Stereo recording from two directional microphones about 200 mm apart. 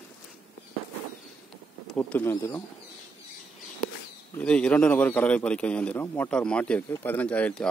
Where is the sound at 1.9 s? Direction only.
5° left (ahead or behind).